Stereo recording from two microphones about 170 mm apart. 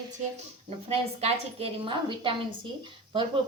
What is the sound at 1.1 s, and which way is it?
Speech, 35° right (ahead or behind).